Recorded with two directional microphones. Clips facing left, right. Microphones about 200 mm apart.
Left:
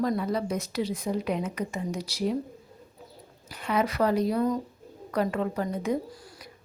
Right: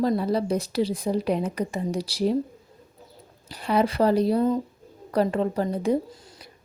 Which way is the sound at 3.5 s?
35° right (ahead or behind).